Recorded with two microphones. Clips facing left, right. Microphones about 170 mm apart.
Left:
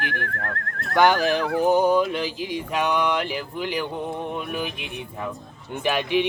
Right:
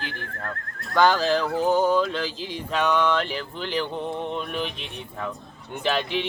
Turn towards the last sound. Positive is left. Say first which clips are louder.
# left 3 dB
turn(degrees=15)  # may be behind; listen again after turning